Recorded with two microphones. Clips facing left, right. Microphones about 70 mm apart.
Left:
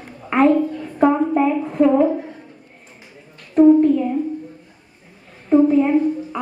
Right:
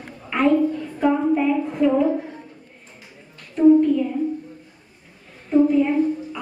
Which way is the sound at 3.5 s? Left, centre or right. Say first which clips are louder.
Left 3 dB; left.